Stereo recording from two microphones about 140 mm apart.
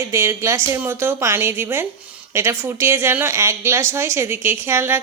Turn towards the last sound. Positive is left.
turn(degrees=-15)  # may be behind; listen again after turning